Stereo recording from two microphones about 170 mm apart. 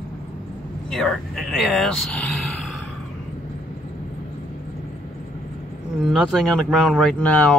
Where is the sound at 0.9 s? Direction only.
Centre (ahead or behind).